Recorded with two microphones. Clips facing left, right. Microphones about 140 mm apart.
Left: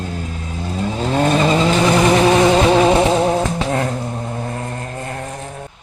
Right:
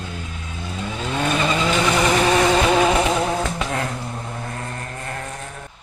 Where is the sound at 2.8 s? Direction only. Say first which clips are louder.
Left 5 dB; 30° left (ahead or behind).